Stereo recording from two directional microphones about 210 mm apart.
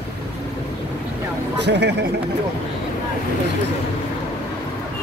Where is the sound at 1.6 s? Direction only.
55° right (ahead or behind).